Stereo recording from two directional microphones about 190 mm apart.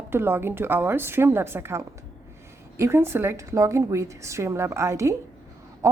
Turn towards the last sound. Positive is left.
turn(degrees=-15)  # may be behind; listen again after turning